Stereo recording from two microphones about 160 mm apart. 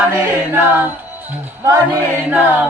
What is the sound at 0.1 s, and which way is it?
Music, 15° right (ahead or behind).